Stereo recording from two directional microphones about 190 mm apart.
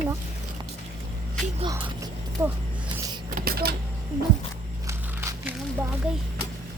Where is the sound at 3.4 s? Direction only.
55° right (ahead or behind).